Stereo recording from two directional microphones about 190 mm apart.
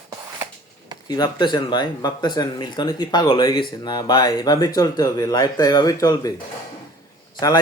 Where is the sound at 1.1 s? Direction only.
25° left (ahead or behind).